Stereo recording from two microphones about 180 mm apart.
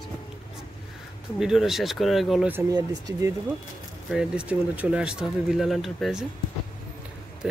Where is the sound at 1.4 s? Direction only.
Centre (ahead or behind).